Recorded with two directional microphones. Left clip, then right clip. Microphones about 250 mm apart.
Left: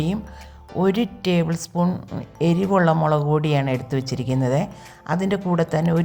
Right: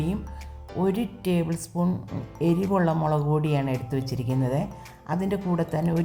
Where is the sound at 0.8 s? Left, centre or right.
Centre.